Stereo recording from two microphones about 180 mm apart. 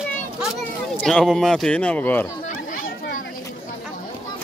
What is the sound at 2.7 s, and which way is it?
Chatter, 50° left (ahead or behind).